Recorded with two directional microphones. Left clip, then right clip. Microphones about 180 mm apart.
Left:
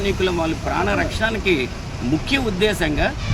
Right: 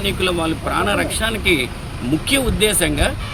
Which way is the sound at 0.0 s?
20° right (ahead or behind).